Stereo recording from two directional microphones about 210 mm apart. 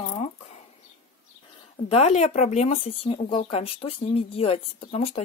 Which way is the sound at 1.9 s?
30° left (ahead or behind).